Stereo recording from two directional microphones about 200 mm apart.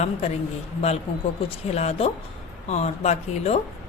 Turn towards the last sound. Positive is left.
turn(degrees=30)  # may be behind; listen again after turning